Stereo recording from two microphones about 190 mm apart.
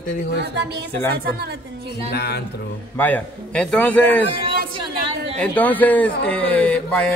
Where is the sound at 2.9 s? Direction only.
10° left (ahead or behind).